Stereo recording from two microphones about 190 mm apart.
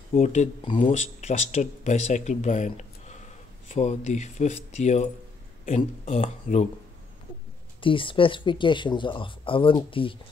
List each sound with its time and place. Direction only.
0.1 s speech: 35° left (ahead or behind)
0.7 s speech: 25° left (ahead or behind)
7.8 s speech: 25° left (ahead or behind)